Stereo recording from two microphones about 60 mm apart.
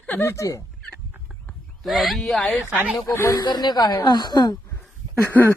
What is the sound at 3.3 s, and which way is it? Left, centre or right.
Speech, left.